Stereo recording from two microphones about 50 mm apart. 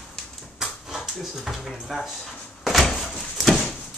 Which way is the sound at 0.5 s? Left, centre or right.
Centre.